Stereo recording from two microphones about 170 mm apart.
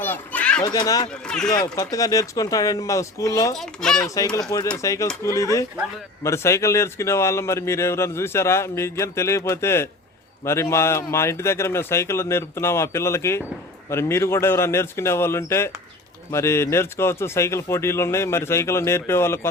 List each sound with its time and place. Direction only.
0.0 s a sound: 10° left (ahead or behind)
0.6 s speech: 20° left (ahead or behind)
3.6 s speech: 5° left (ahead or behind)
4.0 s speech: 20° left (ahead or behind)